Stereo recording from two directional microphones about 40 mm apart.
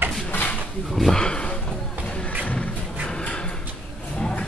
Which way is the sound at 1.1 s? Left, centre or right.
Left.